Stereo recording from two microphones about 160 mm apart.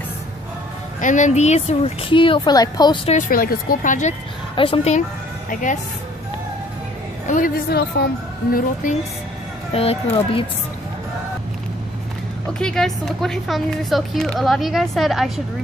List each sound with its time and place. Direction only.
1.0 s a woman's voice: 50° left (ahead or behind); by 3.0 s 25° left (ahead or behind)
3.1 s a woman's voice: 55° left (ahead or behind)
4.6 s a woman's voice: 35° left (ahead or behind)
5.5 s a woman's voice: 50° left (ahead or behind)
7.2 s a woman's voice: 60° left (ahead or behind)
9.7 s a woman's voice: 40° left (ahead or behind)
12.5 s speech: 5° left (ahead or behind)